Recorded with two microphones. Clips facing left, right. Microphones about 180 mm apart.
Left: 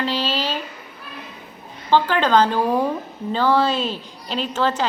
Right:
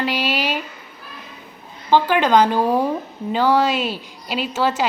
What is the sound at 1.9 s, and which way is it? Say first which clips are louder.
A woman's voice: right 2 dB; 10° right (ahead or behind).